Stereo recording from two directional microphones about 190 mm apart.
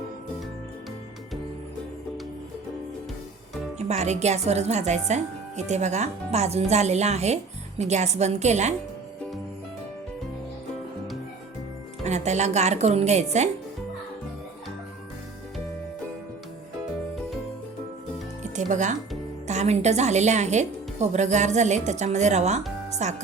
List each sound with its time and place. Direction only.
3.8 s speech: 35° right (ahead or behind)
12.0 s speech: 35° right (ahead or behind)
18.5 s music: 40° right (ahead or behind)
19.5 s speech: 35° right (ahead or behind)
22.9 s music: 35° right (ahead or behind)